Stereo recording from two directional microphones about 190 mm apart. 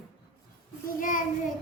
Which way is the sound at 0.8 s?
45° left (ahead or behind).